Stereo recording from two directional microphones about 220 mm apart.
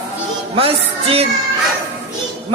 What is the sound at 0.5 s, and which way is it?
Music, 25° right (ahead or behind).